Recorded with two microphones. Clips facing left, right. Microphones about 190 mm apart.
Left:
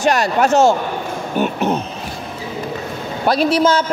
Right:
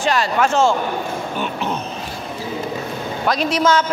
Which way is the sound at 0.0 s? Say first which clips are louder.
Left 3 dB; 45° left (ahead or behind).